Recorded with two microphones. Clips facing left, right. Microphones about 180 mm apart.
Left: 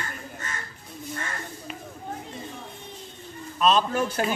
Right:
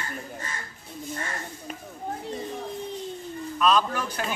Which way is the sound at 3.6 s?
25° left (ahead or behind).